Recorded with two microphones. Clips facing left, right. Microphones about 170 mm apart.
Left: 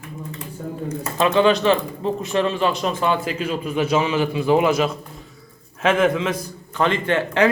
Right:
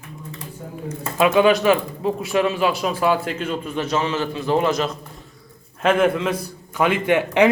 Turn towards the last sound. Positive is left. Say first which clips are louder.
# right 2 dB
turn(degrees=-15)  # may be behind; listen again after turning